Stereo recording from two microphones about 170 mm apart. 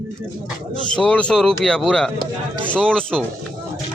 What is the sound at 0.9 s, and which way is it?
Speech, 5° left (ahead or behind).